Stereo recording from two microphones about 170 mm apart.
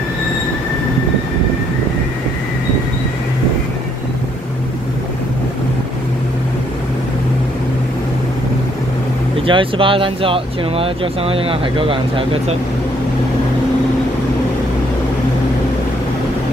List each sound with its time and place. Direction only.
9.5 s speech: 30° right (ahead or behind)